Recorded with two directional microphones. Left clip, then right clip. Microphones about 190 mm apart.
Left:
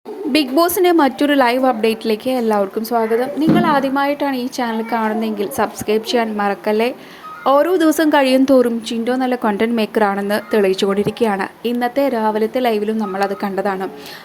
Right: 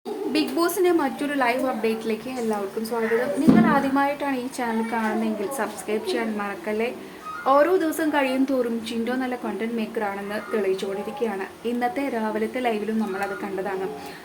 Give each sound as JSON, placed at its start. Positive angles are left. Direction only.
{"t": 0.3, "sound": "a woman's voice", "side_deg": 35}
{"t": 3.6, "sound": "a woman's voice", "side_deg": 25}
{"t": 11.8, "sound": "a woman's voice", "side_deg": 25}